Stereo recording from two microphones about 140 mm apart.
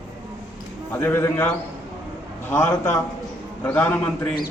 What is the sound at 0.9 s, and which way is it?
Speech, 15° left (ahead or behind).